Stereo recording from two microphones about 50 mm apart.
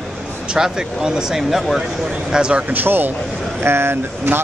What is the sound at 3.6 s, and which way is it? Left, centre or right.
Speech, right.